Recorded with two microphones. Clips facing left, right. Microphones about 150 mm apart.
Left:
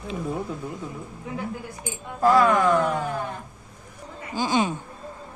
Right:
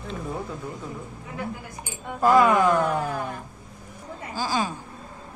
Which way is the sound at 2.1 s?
5° right (ahead or behind).